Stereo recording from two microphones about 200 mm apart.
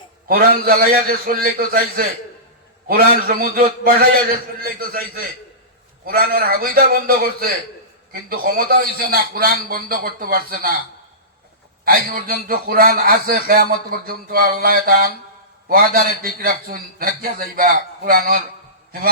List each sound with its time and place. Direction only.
0.3 s a man's voice: 45° right (ahead or behind)
11.9 s a man's voice: 45° right (ahead or behind)